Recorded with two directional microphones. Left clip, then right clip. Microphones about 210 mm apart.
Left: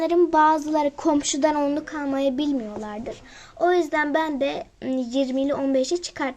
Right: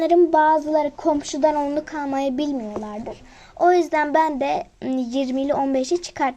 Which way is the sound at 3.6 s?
15° right (ahead or behind).